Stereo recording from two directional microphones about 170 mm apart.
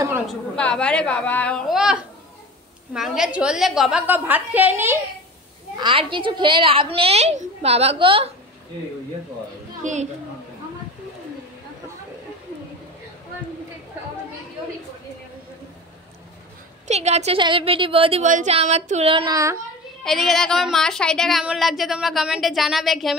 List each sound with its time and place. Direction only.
0.3 s a woman's voice: 5° left (ahead or behind)
1.7 s a sound: 5° right (ahead or behind)
2.9 s a woman's voice: 5° right (ahead or behind)
5.8 s a woman's voice: 30° right (ahead or behind)
9.8 s a woman's voice: 45° right (ahead or behind)
16.8 s a woman's voice: 40° right (ahead or behind)
18.2 s a woman's voice: 45° right (ahead or behind); by 19.6 s 20° right (ahead or behind)
20.0 s a woman's voice: centre (ahead or behind)